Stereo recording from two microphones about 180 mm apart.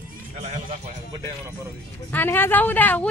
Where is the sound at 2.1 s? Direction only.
10° left (ahead or behind).